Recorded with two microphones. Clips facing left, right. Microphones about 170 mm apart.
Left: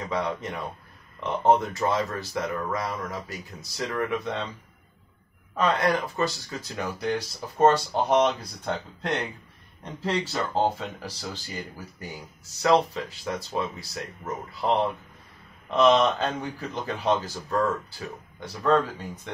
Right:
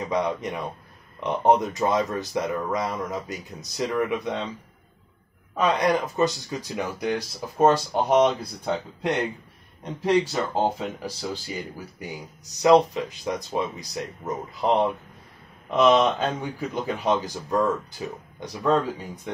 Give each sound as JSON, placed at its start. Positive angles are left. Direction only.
{"t": 0.0, "sound": "speech", "side_deg": -20}
{"t": 5.6, "sound": "speech", "side_deg": -15}